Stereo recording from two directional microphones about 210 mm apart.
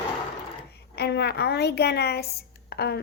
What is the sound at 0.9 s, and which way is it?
A woman's voice, 50° left (ahead or behind).